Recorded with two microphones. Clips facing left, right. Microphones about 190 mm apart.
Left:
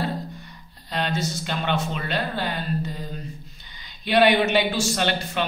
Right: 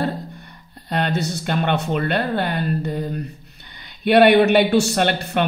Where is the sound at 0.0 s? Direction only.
55° right (ahead or behind).